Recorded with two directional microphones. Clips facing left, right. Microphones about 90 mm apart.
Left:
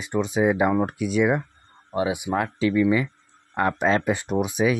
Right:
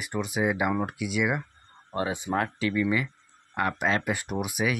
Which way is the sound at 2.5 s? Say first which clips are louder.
Left 6 dB; 25° left (ahead or behind).